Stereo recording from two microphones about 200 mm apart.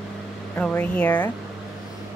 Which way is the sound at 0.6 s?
5° left (ahead or behind).